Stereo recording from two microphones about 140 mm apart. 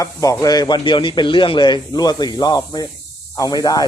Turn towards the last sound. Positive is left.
turn(degrees=25)  # may be behind; listen again after turning